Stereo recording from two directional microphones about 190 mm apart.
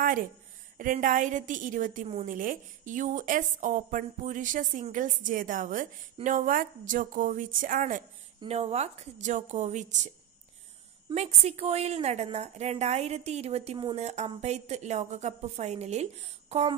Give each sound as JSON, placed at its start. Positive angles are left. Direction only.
{"t": 0.7, "sound": "a woman's voice", "side_deg": -45}
{"t": 8.4, "sound": "a woman's voice", "side_deg": -35}